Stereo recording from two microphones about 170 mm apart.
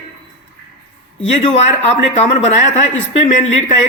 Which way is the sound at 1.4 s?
40° left (ahead or behind).